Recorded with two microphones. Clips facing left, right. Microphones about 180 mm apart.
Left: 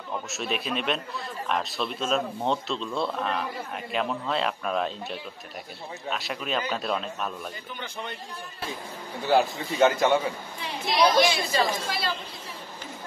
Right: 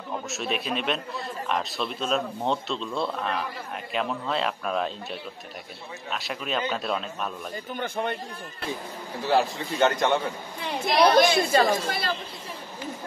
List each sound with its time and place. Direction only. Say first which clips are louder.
0.3 s a man's voice: right 1 dB; centre (ahead or behind)
6.0 s a man's voice: left 1 dB; centre (ahead or behind)
7.7 s speech: right 11 dB; 55° right (ahead or behind)
9.2 s a man's voice: left 1 dB; centre (ahead or behind)
10.9 s a woman's voice: right 2 dB; 60° right (ahead or behind)